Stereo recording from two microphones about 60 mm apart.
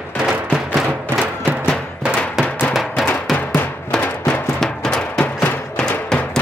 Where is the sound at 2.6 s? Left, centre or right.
Centre.